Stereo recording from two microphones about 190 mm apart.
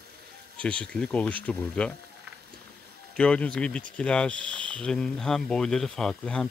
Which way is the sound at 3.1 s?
5° left (ahead or behind).